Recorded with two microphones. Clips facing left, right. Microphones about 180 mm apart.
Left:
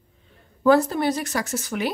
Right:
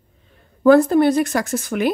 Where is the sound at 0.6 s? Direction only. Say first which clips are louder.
Right 6 dB; 55° right (ahead or behind).